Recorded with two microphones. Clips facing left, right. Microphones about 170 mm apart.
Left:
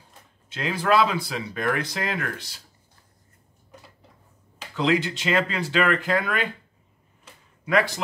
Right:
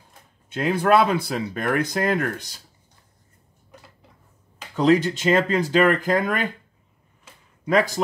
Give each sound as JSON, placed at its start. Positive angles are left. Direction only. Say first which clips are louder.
{"t": 0.5, "sound": "speech", "louder": "right 4 dB", "side_deg": -50}
{"t": 4.7, "sound": "speech", "louder": "right 5 dB", "side_deg": -40}
{"t": 7.6, "sound": "speech", "louder": "right 2 dB", "side_deg": -40}